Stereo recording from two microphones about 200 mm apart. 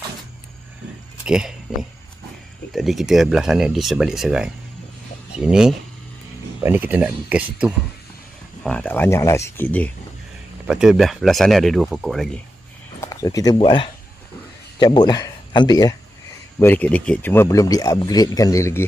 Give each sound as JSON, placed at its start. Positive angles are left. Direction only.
{"t": 1.2, "sound": "speech", "side_deg": -5}
{"t": 8.6, "sound": "speech", "side_deg": 5}
{"t": 10.7, "sound": "speech", "side_deg": -5}
{"t": 13.0, "sound": "speech", "side_deg": 15}
{"t": 16.5, "sound": "speech", "side_deg": 10}